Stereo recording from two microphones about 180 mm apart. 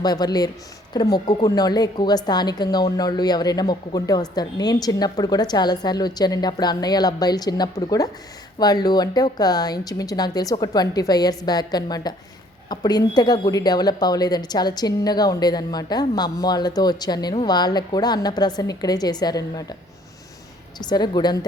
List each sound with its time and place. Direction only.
0.0 s a woman's voice: 20° left (ahead or behind)
20.7 s a woman's voice: 25° left (ahead or behind)